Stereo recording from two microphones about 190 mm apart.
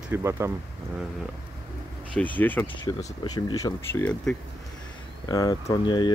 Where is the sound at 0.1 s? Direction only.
15° right (ahead or behind).